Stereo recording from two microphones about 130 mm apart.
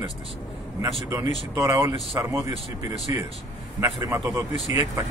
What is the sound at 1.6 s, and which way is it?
Speech, 25° right (ahead or behind).